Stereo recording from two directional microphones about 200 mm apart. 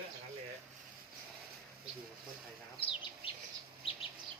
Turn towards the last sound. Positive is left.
turn(degrees=25)  # may be behind; listen again after turning